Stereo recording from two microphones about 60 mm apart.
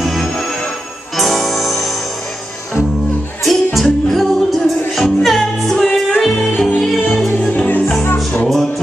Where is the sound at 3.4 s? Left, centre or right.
Centre.